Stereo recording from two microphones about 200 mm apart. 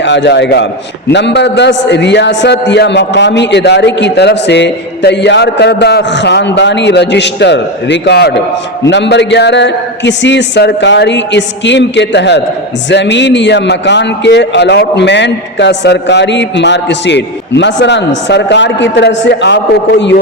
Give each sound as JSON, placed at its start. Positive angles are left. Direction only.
{"t": 0.0, "sound": "a man's voice", "side_deg": 60}